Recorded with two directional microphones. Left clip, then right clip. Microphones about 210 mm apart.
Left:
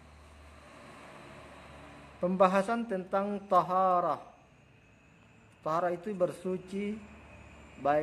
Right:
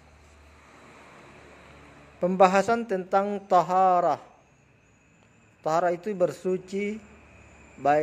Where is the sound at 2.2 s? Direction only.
25° right (ahead or behind).